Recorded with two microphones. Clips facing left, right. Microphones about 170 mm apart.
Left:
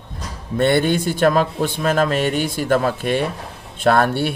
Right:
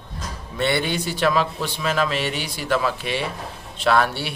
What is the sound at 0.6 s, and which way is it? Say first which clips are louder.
Speech: left 6 dB; 50° left (ahead or behind).